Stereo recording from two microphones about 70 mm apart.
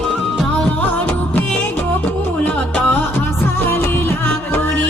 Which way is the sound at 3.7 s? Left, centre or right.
Left.